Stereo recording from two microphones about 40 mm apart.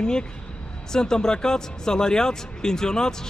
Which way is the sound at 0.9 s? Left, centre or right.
Centre.